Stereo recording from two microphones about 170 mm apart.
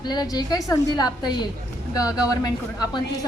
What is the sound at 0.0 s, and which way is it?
A woman's voice, 25° left (ahead or behind).